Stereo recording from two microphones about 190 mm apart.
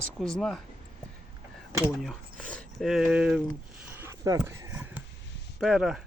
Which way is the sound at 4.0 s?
15° right (ahead or behind).